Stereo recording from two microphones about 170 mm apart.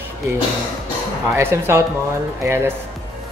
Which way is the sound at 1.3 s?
15° right (ahead or behind).